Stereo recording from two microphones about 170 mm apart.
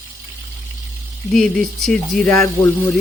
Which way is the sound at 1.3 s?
5° left (ahead or behind).